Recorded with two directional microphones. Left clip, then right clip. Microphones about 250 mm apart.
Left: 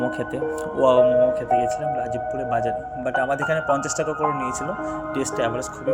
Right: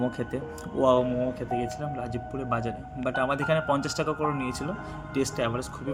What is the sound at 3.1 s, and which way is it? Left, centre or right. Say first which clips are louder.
Speech: left 4 dB; centre.